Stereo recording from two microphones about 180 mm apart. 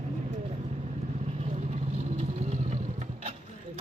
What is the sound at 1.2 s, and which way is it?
Vehicle, 35° right (ahead or behind).